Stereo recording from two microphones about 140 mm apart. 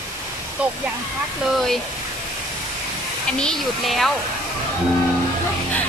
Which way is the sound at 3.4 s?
5° left (ahead or behind).